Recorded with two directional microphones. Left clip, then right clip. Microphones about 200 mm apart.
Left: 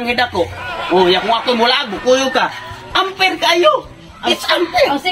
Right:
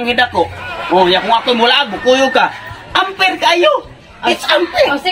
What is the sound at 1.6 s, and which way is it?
A man's voice, 15° right (ahead or behind).